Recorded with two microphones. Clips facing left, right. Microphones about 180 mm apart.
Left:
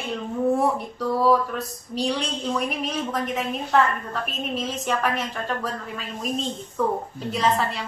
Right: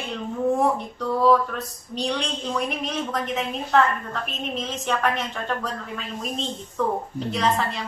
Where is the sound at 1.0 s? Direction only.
5° left (ahead or behind).